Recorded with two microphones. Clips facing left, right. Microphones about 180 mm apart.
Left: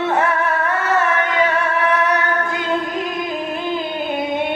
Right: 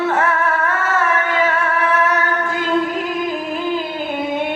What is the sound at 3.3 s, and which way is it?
Music, 20° left (ahead or behind).